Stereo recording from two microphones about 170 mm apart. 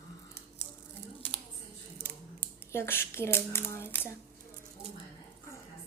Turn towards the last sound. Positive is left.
turn(degrees=15)  # may be behind; listen again after turning